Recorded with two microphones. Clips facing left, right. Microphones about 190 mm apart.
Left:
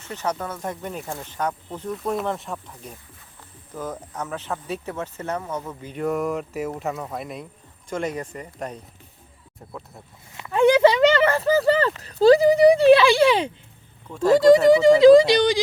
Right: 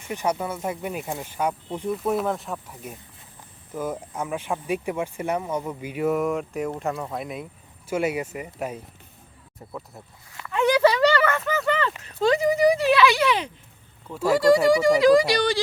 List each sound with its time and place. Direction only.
0.0 s speech: 15° right (ahead or behind)
10.5 s a sound: 30° left (ahead or behind)
14.1 s speech: 5° right (ahead or behind)
14.3 s speech: 20° left (ahead or behind)